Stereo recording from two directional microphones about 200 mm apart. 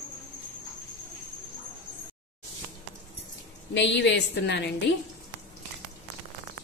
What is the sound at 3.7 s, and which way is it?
A woman's voice, 65° left (ahead or behind).